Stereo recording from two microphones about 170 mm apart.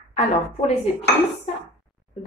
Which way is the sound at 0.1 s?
40° left (ahead or behind).